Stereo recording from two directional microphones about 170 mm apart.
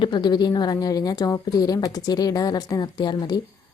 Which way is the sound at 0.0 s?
25° left (ahead or behind).